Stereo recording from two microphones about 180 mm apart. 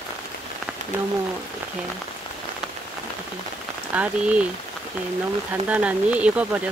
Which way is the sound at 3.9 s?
5° right (ahead or behind).